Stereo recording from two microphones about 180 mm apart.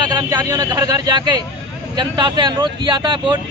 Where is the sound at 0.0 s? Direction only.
25° right (ahead or behind).